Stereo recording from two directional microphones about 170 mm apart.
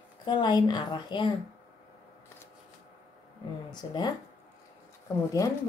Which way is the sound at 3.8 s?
25° left (ahead or behind).